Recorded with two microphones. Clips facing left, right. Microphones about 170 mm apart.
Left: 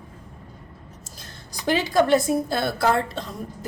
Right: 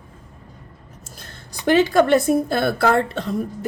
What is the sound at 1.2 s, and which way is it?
A woman's voice, 60° right (ahead or behind).